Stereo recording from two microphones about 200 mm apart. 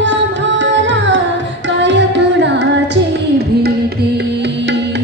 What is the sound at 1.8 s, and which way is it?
Music, 65° right (ahead or behind).